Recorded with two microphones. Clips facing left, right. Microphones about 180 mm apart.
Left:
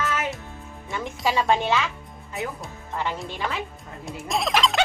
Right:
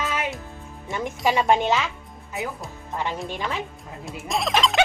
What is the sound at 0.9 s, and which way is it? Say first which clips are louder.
Speech: right 3 dB; 20° right (ahead or behind).